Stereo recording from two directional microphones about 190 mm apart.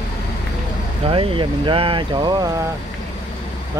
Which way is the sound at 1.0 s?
25° right (ahead or behind).